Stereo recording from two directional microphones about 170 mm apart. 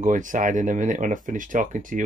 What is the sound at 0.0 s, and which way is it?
Speech, 50° right (ahead or behind).